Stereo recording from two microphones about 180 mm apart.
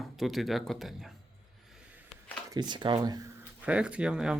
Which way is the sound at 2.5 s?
25° right (ahead or behind).